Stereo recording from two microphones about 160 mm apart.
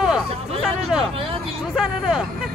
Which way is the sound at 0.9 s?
5° right (ahead or behind).